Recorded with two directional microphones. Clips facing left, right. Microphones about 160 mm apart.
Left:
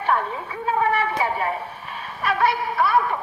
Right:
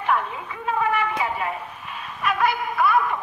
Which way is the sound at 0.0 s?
35° left (ahead or behind).